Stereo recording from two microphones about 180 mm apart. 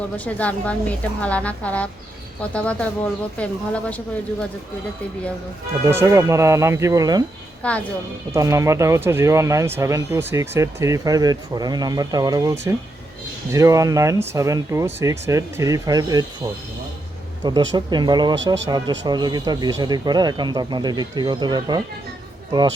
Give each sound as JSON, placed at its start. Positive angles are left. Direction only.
{"t": 0.3, "sound": "speech", "side_deg": 10}
{"t": 5.8, "sound": "speech", "side_deg": -15}
{"t": 7.6, "sound": "speech", "side_deg": 5}
{"t": 8.3, "sound": "speech", "side_deg": -15}
{"t": 17.4, "sound": "speech", "side_deg": -25}